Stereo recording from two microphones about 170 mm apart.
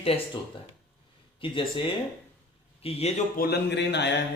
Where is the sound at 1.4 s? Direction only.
30° left (ahead or behind).